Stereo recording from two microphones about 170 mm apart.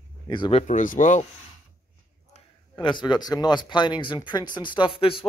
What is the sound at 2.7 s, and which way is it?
Speech, 25° left (ahead or behind).